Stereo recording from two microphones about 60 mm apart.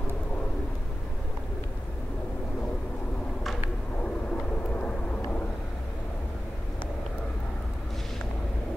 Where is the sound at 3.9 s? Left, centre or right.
Left.